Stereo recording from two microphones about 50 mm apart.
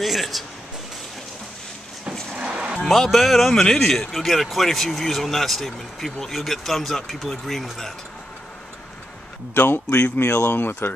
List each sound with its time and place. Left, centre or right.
0.0 s speech: centre
2.3 s a sound: centre
2.8 s speech: centre
9.5 s speech: left